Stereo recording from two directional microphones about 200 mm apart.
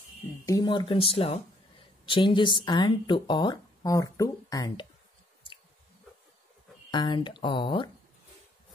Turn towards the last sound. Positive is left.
turn(degrees=25)  # may be behind; listen again after turning